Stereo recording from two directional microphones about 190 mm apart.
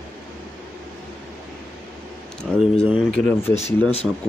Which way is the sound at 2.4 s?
Centre (ahead or behind).